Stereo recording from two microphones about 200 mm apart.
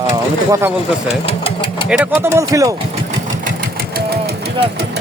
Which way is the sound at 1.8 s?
10° right (ahead or behind).